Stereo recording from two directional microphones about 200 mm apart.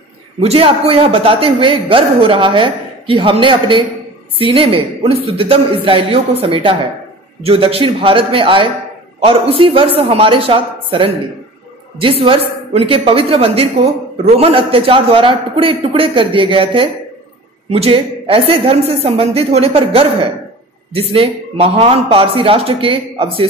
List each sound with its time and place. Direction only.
0.4 s a man's voice: 30° right (ahead or behind)